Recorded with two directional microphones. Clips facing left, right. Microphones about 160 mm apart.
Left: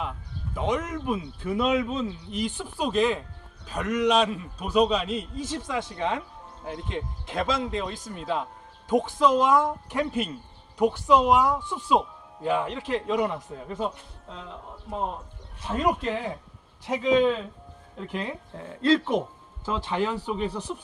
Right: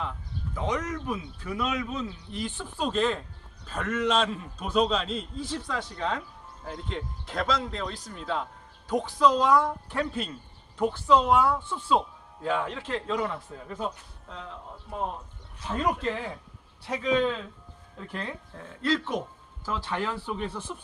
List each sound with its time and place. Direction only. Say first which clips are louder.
0.5 s a man's voice: left 3 dB; 20° left (ahead or behind)
13.7 s speech: left 3 dB; centre (ahead or behind)
15.6 s a man's voice: left 2 dB; 10° left (ahead or behind)
18.6 s a man's voice: left 6 dB; 25° left (ahead or behind)